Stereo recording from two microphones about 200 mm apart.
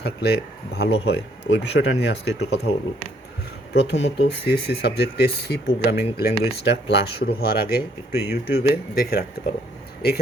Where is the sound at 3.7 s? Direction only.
60° left (ahead or behind).